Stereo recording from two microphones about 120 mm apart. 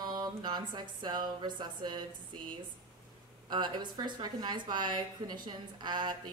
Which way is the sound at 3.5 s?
40° right (ahead or behind).